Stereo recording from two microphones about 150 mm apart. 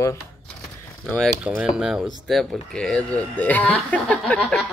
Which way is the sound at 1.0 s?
5° left (ahead or behind).